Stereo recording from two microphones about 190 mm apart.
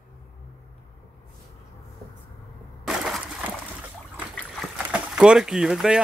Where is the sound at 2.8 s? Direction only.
Centre (ahead or behind).